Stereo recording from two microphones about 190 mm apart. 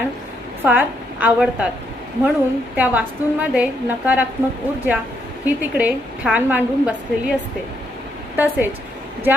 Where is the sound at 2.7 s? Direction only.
10° right (ahead or behind).